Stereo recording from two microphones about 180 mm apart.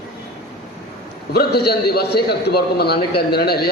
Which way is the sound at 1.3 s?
60° left (ahead or behind).